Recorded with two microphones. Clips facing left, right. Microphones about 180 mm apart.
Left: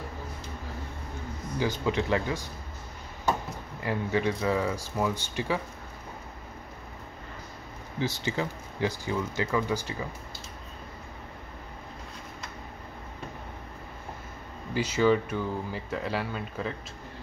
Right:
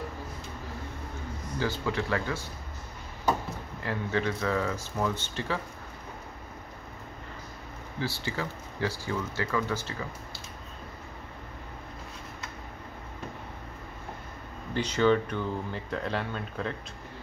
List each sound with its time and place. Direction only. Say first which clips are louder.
1.6 s speech: left 2 dB; 20° left (ahead or behind)
3.8 s speech: left 2 dB; 15° left (ahead or behind)
8.0 s speech: left 3 dB; 20° left (ahead or behind)
14.7 s speech: left 1 dB; 5° left (ahead or behind)